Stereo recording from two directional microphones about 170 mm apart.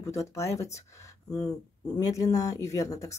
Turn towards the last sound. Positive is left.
turn(degrees=20)  # may be behind; listen again after turning